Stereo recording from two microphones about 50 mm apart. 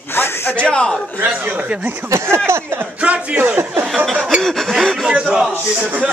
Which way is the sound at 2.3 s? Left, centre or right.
Right.